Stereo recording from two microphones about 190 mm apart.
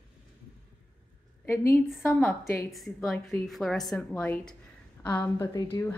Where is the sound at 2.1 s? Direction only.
5° left (ahead or behind).